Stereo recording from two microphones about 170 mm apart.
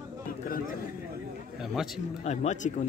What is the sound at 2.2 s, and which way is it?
Speech, 40° left (ahead or behind).